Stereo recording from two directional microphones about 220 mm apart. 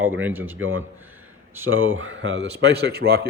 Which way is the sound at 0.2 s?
10° right (ahead or behind).